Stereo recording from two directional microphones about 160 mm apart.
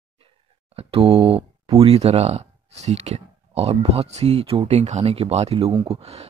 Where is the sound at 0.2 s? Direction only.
40° right (ahead or behind).